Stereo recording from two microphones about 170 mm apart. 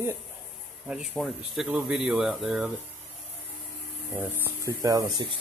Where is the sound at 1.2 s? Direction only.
Centre (ahead or behind).